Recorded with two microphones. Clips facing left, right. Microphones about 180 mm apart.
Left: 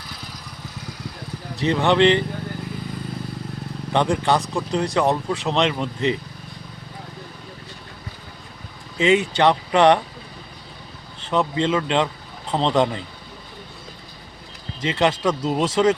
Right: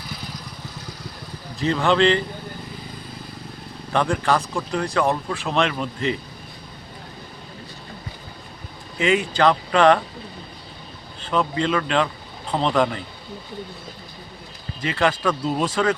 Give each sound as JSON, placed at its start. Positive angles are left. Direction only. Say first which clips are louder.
{"t": 1.5, "sound": "speech", "louder": "left 1 dB", "side_deg": 20}
{"t": 3.9, "sound": "speech", "louder": "left 1 dB", "side_deg": 20}
{"t": 9.0, "sound": "speech", "louder": "left 2 dB", "side_deg": 20}
{"t": 11.2, "sound": "speech", "louder": "left 1 dB", "side_deg": 20}
{"t": 14.8, "sound": "speech", "louder": "left 1 dB", "side_deg": 20}